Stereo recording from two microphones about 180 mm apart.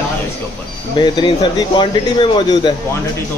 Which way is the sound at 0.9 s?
25° left (ahead or behind).